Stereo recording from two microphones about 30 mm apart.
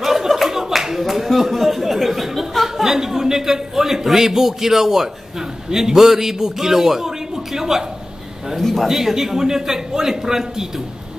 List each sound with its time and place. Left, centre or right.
0.0 s clapping: centre
1.0 s a man's voice: centre
8.5 s a man's voice: centre
8.8 s speech: centre